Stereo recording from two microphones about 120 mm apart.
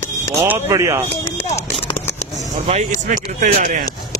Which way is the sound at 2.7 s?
80° right.